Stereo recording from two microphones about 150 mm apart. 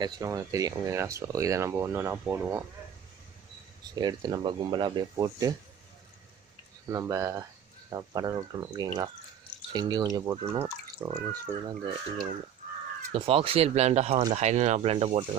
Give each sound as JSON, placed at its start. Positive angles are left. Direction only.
{"t": 0.0, "sound": "speech", "side_deg": -20}
{"t": 3.9, "sound": "speech", "side_deg": -30}
{"t": 6.9, "sound": "speech", "side_deg": -20}
{"t": 13.1, "sound": "speech", "side_deg": -40}